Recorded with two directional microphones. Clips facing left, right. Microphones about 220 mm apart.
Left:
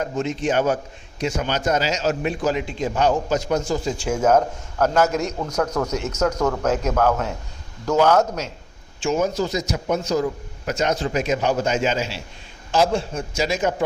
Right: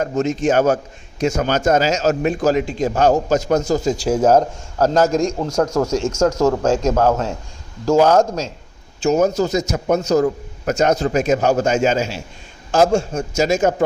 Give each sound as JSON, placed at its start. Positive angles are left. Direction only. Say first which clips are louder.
{"t": 0.0, "sound": "a man's voice", "louder": "right 5 dB", "side_deg": -45}
{"t": 9.0, "sound": "a man's voice", "louder": "right 5 dB", "side_deg": -40}